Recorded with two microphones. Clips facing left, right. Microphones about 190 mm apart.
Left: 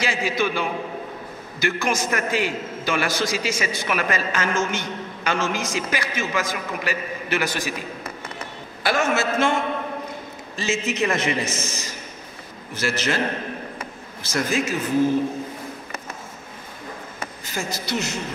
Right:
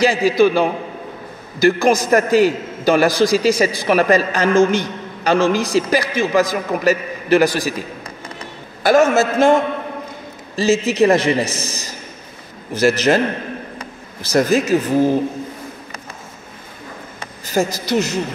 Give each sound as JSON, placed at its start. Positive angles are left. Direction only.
{"t": 0.0, "sound": "a man's voice", "side_deg": -35}
{"t": 8.8, "sound": "a man's voice", "side_deg": -40}
{"t": 14.2, "sound": "a man's voice", "side_deg": -35}
{"t": 17.5, "sound": "a man's voice", "side_deg": -40}